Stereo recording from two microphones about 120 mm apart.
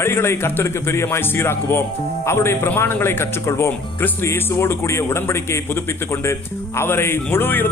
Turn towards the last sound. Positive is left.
turn(degrees=15)  # may be behind; listen again after turning